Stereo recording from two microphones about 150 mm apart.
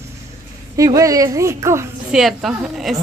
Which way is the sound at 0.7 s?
20° right (ahead or behind).